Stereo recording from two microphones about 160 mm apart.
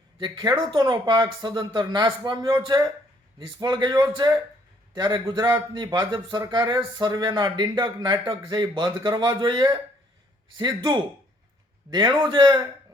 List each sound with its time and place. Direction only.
0.5 s speech: 30° right (ahead or behind)